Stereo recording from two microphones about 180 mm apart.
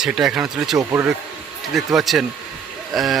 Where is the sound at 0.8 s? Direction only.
15° right (ahead or behind).